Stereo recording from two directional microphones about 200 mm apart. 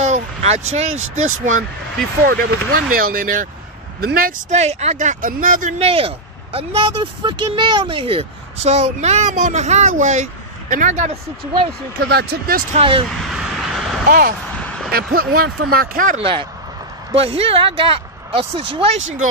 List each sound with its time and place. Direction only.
0.0 s speech: 35° right (ahead or behind)
12.1 s speech: 55° right (ahead or behind)
12.7 s speech: 25° right (ahead or behind)
13.3 s vehicle: centre (ahead or behind)
14.0 s speech: 45° right (ahead or behind)
16.2 s speech: 25° right (ahead or behind)